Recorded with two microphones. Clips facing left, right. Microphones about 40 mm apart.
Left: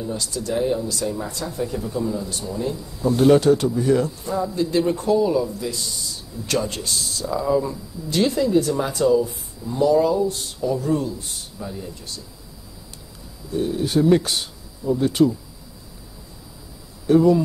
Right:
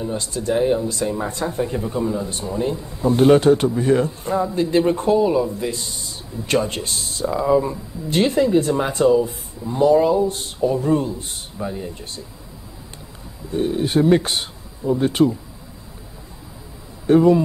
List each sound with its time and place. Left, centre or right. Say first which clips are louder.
0.0 s speech: right 3 dB; right
13.5 s speech: right 2 dB; right
17.0 s speech: right 2 dB; right